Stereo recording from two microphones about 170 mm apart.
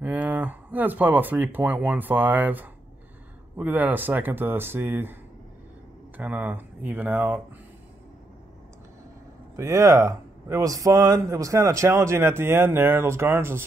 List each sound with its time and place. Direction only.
0.0 s speech: 10° right (ahead or behind)
6.1 s speech: 10° right (ahead or behind)
9.6 s speech: 15° right (ahead or behind)